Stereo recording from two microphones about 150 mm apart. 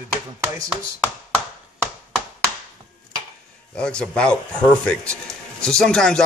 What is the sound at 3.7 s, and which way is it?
A man's voice, 5° left (ahead or behind).